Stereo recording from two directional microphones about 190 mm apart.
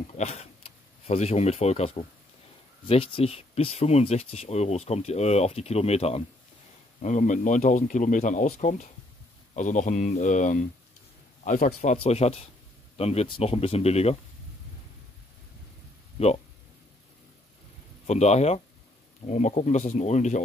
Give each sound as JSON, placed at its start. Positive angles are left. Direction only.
{"t": 0.1, "sound": "speech", "side_deg": 35}
{"t": 16.2, "sound": "speech", "side_deg": 30}
{"t": 18.0, "sound": "speech", "side_deg": 35}